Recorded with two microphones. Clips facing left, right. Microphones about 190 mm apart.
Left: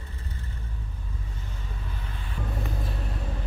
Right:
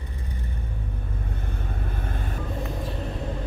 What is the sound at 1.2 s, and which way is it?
Vehicle, 55° right (ahead or behind).